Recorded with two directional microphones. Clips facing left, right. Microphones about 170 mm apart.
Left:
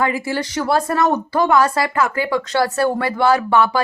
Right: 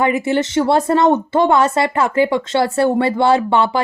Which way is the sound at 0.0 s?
25° right (ahead or behind).